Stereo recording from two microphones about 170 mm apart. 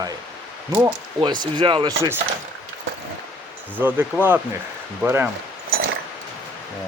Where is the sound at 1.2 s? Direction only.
25° right (ahead or behind).